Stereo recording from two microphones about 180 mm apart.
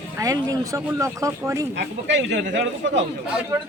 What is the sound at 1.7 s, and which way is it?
Speech, 75° right (ahead or behind).